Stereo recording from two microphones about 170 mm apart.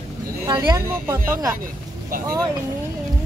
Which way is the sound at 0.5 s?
25° right (ahead or behind).